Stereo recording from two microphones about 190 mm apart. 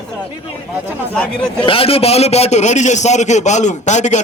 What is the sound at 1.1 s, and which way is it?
Speech, 5° left (ahead or behind).